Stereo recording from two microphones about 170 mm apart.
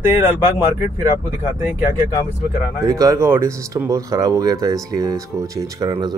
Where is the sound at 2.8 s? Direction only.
20° right (ahead or behind).